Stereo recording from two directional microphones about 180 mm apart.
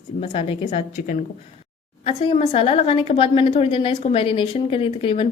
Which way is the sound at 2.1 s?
30° left (ahead or behind).